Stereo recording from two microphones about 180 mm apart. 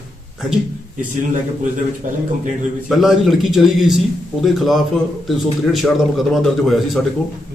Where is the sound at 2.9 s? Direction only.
Centre (ahead or behind).